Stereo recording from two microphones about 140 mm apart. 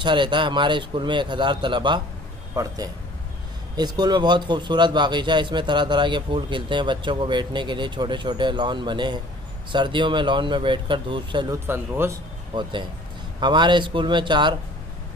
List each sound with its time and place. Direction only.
0.0 s a man's voice: 35° right (ahead or behind)
2.5 s a man's voice: 25° right (ahead or behind)
11.5 s speech: 15° right (ahead or behind)
13.4 s a man's voice: 35° right (ahead or behind)